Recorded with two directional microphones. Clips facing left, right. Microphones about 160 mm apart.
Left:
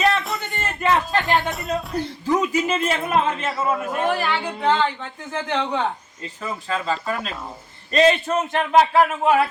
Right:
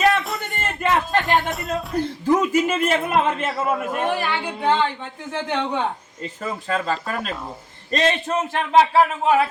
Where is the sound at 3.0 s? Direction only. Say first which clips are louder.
Right 1 dB; centre (ahead or behind).